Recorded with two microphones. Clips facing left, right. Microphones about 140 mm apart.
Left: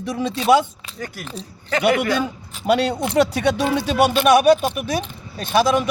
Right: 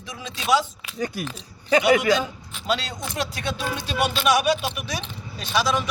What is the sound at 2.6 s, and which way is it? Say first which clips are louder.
Speech: left 9 dB; 60° left (ahead or behind).